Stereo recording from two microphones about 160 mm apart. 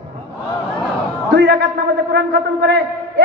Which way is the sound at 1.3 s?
85° right.